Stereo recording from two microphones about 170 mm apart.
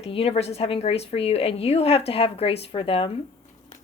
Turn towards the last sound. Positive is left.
turn(degrees=30)  # may be behind; listen again after turning